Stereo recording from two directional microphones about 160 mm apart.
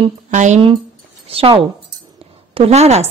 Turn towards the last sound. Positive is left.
turn(degrees=-40)  # may be behind; listen again after turning